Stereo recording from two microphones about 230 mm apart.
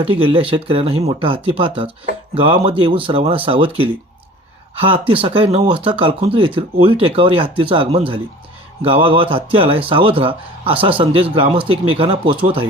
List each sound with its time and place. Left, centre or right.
0.0 s speech: right